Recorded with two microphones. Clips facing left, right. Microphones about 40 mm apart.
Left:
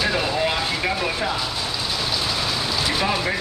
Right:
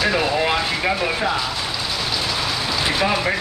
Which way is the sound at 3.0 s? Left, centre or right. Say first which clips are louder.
Right 4 dB; centre.